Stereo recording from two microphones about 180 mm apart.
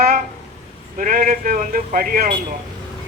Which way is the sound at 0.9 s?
50° right (ahead or behind).